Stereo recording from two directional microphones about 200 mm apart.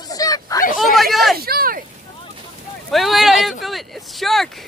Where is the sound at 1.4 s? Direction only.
50° right (ahead or behind).